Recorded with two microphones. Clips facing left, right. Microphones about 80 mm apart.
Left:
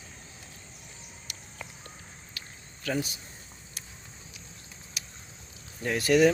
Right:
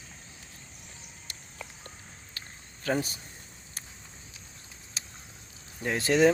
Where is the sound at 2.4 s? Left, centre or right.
Right.